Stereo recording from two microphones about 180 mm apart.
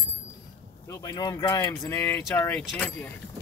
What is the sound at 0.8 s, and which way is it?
Speech, 20° left (ahead or behind).